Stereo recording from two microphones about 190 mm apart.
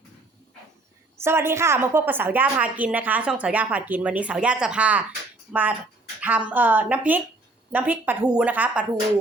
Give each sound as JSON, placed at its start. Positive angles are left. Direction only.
{"t": 1.2, "sound": "a woman's voice", "side_deg": -15}